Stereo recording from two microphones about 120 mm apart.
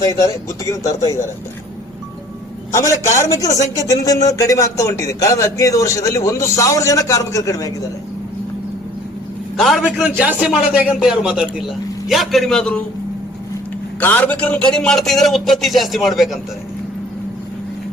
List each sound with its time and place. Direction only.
0.0 s speech: 30° left (ahead or behind)
2.7 s speech: 25° left (ahead or behind)
9.6 s a man's voice: centre (ahead or behind)
10.2 s a man's voice: 10° right (ahead or behind); by 12.8 s 5° left (ahead or behind)
14.0 s a man's voice: 10° left (ahead or behind)